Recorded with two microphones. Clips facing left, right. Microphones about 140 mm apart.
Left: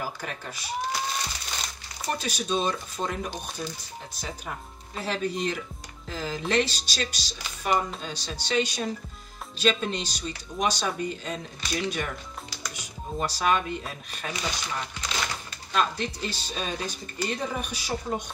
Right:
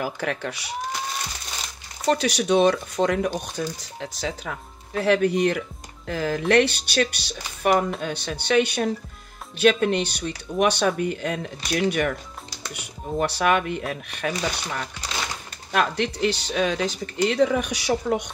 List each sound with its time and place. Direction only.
0.0 s speech: 75° right (ahead or behind)
2.0 s speech: 75° right (ahead or behind)